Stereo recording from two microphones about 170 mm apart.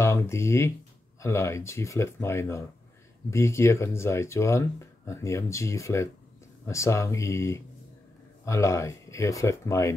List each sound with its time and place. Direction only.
0.0 s speech: 15° left (ahead or behind)